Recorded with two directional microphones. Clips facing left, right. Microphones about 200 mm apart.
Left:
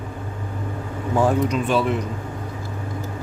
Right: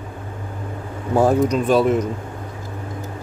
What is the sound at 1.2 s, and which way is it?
Speech, 40° right (ahead or behind).